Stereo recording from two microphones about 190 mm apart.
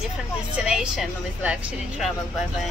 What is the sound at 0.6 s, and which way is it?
A woman's voice, 5° right (ahead or behind).